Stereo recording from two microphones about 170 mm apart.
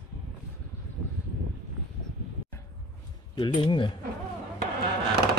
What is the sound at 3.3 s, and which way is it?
Speech, 30° left (ahead or behind).